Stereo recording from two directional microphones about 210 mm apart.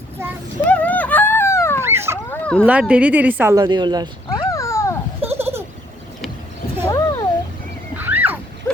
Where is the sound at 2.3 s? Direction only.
5° left (ahead or behind).